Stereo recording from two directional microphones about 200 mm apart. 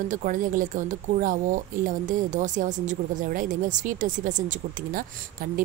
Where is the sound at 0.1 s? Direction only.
40° right (ahead or behind).